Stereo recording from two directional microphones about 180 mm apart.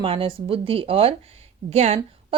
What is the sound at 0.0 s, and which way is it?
A woman's voice, 30° right (ahead or behind).